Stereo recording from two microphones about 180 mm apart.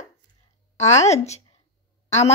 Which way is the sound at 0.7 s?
40° left (ahead or behind).